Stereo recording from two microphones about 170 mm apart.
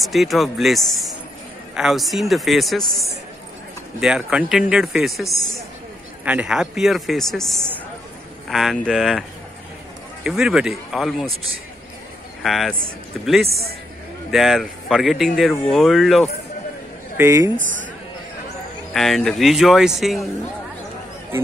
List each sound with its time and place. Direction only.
0.0 s speech: centre (ahead or behind)
6.2 s speech: 5° right (ahead or behind)
10.2 s speech: 5° right (ahead or behind)
12.4 s speech: centre (ahead or behind)
17.2 s speech: 15° right (ahead or behind)
18.9 s speech: centre (ahead or behind)